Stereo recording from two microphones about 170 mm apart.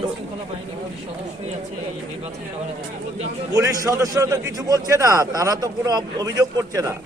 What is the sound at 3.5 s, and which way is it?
A man's voice, 20° right (ahead or behind).